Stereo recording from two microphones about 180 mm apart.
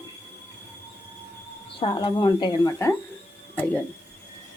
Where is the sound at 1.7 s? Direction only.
25° left (ahead or behind).